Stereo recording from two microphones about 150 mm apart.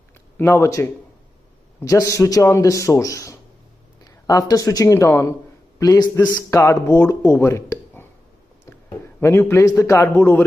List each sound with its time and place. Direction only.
0.4 s a man's voice: 20° left (ahead or behind)
9.2 s speech: 15° left (ahead or behind)